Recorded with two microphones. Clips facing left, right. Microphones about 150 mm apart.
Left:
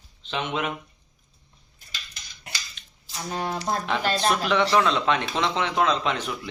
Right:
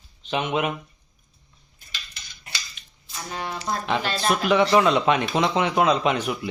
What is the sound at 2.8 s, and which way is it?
Scissors, 5° right (ahead or behind).